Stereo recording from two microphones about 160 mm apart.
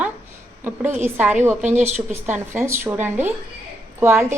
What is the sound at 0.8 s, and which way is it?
Speech, 50° right (ahead or behind).